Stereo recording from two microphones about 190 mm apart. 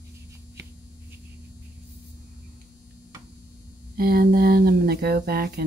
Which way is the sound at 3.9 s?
50° right (ahead or behind).